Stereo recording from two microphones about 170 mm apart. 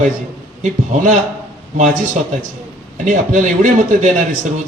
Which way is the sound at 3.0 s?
50° right (ahead or behind).